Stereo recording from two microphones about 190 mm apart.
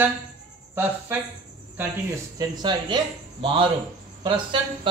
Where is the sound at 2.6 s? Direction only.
25° right (ahead or behind).